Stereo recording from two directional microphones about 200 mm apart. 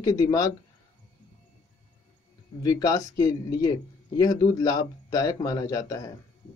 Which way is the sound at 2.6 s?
15° left (ahead or behind).